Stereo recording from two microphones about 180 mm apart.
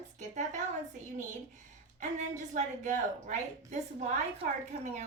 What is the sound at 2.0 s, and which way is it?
A woman's voice, 40° right (ahead or behind).